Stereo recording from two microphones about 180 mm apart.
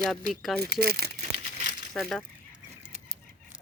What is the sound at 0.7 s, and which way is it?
Speech, 60° right (ahead or behind).